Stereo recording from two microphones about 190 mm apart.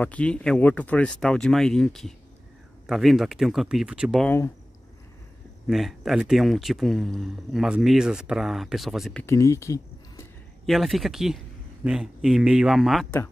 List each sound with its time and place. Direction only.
0.0 s speech: 5° left (ahead or behind)
5.7 s speech: centre (ahead or behind)
9.2 s speech: 15° left (ahead or behind)
10.6 s speech: centre (ahead or behind)